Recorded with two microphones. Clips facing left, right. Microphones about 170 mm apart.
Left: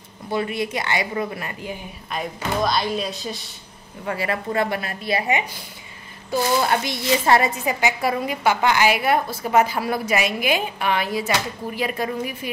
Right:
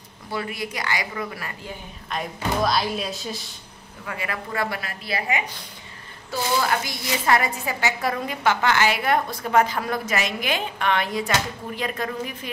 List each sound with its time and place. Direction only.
0.3 s a woman's voice: 25° left (ahead or behind)
2.0 s speech: centre (ahead or behind)
4.0 s a woman's voice: 35° left (ahead or behind)
7.6 s a woman's voice: 15° left (ahead or behind)